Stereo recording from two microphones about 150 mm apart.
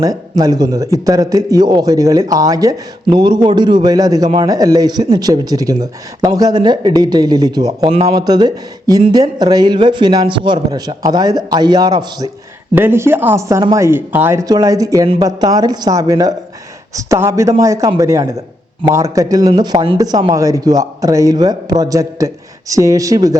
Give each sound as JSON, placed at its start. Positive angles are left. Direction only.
{"t": 0.0, "sound": "a man's voice", "side_deg": -25}
{"t": 12.7, "sound": "a man's voice", "side_deg": -15}